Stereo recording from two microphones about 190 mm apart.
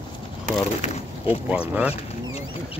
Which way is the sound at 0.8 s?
35° left (ahead or behind).